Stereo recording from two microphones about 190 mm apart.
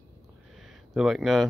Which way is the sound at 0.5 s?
Centre (ahead or behind).